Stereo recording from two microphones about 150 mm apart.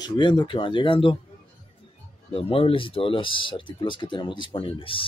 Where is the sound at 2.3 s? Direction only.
40° left (ahead or behind).